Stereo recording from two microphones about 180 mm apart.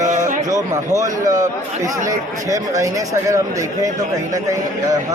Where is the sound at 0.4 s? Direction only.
20° right (ahead or behind).